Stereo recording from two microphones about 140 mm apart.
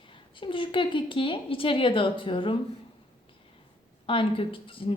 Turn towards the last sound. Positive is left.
turn(degrees=40)  # may be behind; listen again after turning